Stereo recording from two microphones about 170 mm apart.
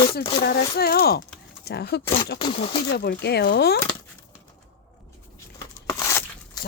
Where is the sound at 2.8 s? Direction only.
70° left (ahead or behind).